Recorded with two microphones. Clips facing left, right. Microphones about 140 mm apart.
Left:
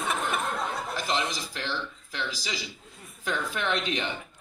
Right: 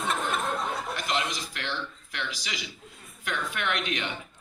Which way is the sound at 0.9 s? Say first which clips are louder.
Left 1 dB; 30° left (ahead or behind).